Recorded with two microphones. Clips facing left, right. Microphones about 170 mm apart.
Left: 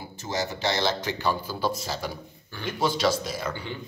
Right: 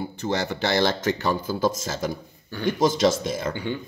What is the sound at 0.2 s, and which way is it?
A man's voice, 55° right (ahead or behind).